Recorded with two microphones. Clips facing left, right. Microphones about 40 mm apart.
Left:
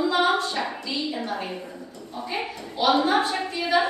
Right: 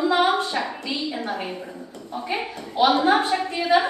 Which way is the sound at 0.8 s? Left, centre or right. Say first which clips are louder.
Right 1 dB; right.